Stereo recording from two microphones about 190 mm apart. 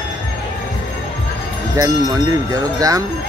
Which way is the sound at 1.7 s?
20° right (ahead or behind).